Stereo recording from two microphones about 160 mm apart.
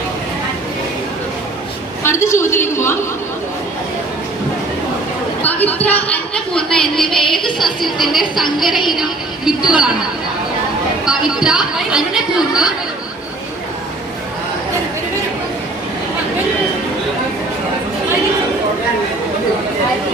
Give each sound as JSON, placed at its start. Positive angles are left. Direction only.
{"t": 2.0, "sound": "a woman's voice", "side_deg": 20}
{"t": 5.4, "sound": "a woman's voice", "side_deg": 10}
{"t": 11.0, "sound": "a woman's voice", "side_deg": -5}